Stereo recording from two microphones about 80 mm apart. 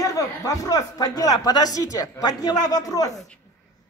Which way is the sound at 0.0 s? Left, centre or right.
Left.